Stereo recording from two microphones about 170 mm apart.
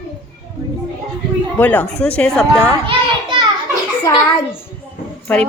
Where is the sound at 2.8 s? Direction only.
30° right (ahead or behind).